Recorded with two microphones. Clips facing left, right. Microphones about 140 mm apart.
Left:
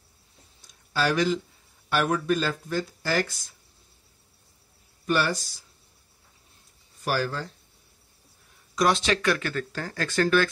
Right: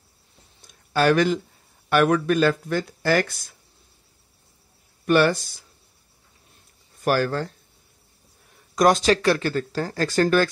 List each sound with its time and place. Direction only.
0.7 s a sound: 55° right (ahead or behind)
1.9 s speech: 60° right (ahead or behind)
5.0 s speech: 55° right (ahead or behind)
7.1 s speech: 55° right (ahead or behind)
8.7 s speech: 45° right (ahead or behind)